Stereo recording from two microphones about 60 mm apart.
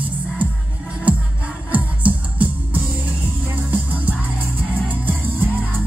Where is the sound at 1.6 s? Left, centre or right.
Right.